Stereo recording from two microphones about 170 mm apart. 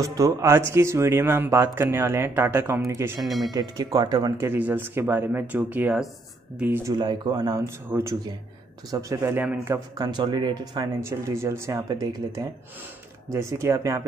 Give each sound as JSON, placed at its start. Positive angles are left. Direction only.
{"t": 0.0, "sound": "speech", "side_deg": -20}
{"t": 3.3, "sound": "speech", "side_deg": 0}
{"t": 3.5, "sound": "speech", "side_deg": -20}
{"t": 4.5, "sound": "speech", "side_deg": -10}
{"t": 9.9, "sound": "speech", "side_deg": -25}